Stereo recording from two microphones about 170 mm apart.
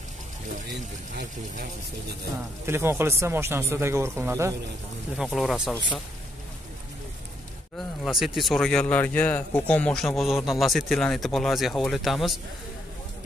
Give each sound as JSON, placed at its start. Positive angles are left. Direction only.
{"t": 1.1, "sound": "speech", "side_deg": -75}
{"t": 2.6, "sound": "speech", "side_deg": -15}
{"t": 5.1, "sound": "speech", "side_deg": 0}
{"t": 7.7, "sound": "a man's voice", "side_deg": 0}